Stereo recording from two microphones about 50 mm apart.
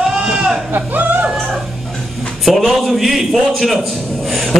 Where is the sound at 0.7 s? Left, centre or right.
Right.